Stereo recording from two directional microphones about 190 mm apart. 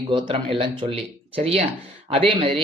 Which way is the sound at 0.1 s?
25° right (ahead or behind).